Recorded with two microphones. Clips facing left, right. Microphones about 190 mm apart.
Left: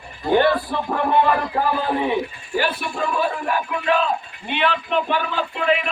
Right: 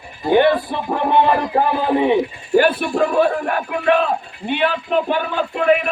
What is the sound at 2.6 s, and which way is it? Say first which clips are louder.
A man's voice: right 7 dB; 50° right (ahead or behind).